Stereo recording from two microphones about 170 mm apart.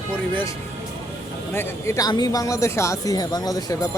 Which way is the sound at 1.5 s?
15° left (ahead or behind).